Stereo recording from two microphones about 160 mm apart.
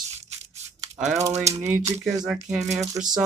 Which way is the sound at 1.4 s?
20° right (ahead or behind).